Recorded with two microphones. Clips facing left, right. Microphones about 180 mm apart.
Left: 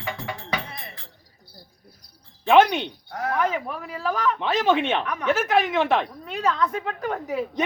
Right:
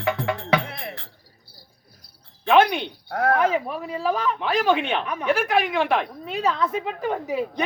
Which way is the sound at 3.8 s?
25° right (ahead or behind).